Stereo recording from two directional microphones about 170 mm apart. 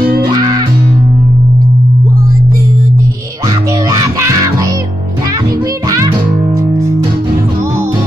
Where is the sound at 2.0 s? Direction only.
20° right (ahead or behind).